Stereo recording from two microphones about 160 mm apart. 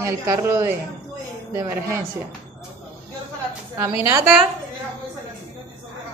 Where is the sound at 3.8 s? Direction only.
15° right (ahead or behind).